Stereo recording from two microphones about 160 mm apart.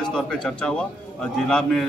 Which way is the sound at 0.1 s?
5° left (ahead or behind).